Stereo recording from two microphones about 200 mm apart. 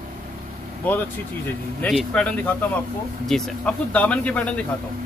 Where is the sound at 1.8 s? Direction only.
5° left (ahead or behind).